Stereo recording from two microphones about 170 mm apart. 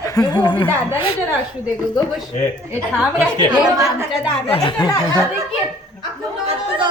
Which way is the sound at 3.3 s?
25° right (ahead or behind).